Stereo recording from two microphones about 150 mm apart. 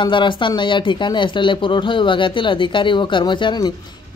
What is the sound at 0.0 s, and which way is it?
Speech, 30° left (ahead or behind).